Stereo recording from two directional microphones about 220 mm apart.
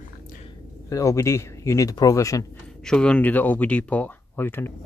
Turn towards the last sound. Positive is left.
turn(degrees=10)  # may be behind; listen again after turning